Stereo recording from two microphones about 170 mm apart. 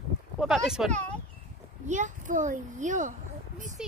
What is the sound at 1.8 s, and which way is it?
A child's voice, 45° right (ahead or behind).